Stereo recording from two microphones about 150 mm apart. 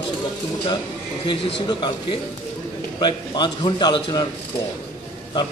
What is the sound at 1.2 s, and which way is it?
A man's voice, 30° left (ahead or behind).